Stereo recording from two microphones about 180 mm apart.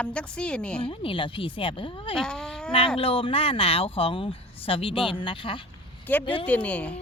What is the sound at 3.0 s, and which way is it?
A woman's voice, 30° left (ahead or behind).